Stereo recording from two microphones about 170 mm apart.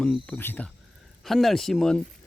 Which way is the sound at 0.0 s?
5° left (ahead or behind).